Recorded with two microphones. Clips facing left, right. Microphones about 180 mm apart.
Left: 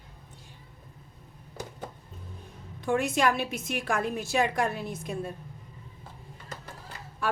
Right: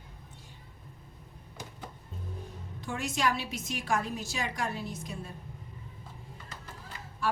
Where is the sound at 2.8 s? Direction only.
55° left (ahead or behind).